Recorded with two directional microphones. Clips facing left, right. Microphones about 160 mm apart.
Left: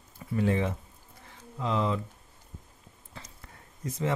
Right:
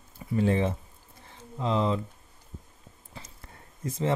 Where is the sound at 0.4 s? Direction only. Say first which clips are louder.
Right 2 dB; 30° right (ahead or behind).